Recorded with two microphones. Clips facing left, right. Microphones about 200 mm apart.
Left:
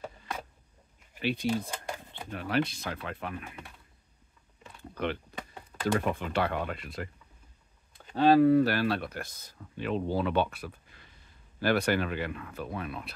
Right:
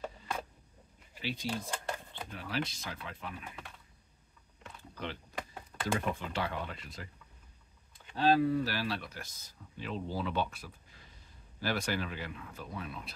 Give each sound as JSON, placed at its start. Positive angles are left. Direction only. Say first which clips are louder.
{"t": 1.2, "sound": "speech", "louder": "left 7 dB", "side_deg": 60}
{"t": 4.9, "sound": "speech", "louder": "left 7 dB", "side_deg": 60}
{"t": 8.2, "sound": "speech", "louder": "left 7 dB", "side_deg": 60}